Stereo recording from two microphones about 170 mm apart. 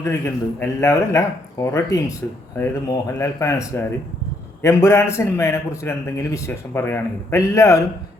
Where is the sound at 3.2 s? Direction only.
20° left (ahead or behind).